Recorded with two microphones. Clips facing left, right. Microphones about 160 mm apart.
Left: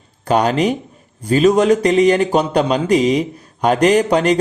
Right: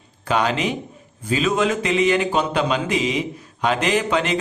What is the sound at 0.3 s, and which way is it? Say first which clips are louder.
A man's voice: left 6 dB; 40° left (ahead or behind).